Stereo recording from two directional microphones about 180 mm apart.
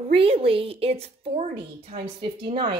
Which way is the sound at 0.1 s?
30° right (ahead or behind).